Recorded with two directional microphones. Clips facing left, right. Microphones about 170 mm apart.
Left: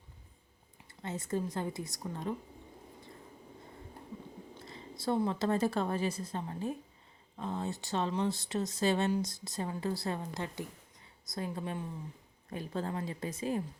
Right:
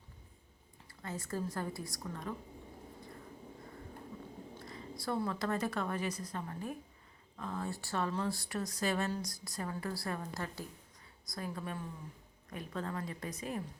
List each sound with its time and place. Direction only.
0.9 s a woman's voice: 20° left (ahead or behind)
4.6 s a woman's voice: 25° left (ahead or behind)